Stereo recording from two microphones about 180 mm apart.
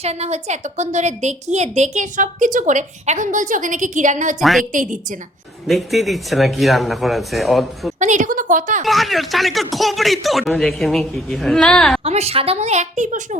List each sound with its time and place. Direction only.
0.0 s a woman's voice: 35° right (ahead or behind)
4.4 s speech: centre (ahead or behind)
4.7 s a woman's voice: 45° right (ahead or behind)
5.6 s speech: centre (ahead or behind)
7.9 s a woman's voice: 45° right (ahead or behind)
8.8 s speech: centre (ahead or behind)
12.0 s a woman's voice: 35° right (ahead or behind)